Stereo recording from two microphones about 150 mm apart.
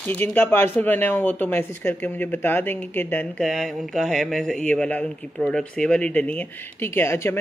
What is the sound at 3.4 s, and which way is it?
A man's voice, centre (ahead or behind).